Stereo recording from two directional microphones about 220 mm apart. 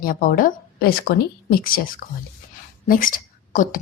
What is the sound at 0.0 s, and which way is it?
Speech, 40° left (ahead or behind).